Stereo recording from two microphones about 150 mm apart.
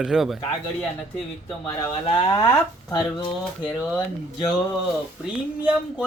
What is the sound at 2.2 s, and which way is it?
Speech, 30° left (ahead or behind).